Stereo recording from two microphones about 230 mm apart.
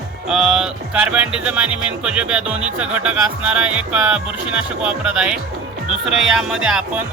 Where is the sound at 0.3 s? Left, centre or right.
Centre.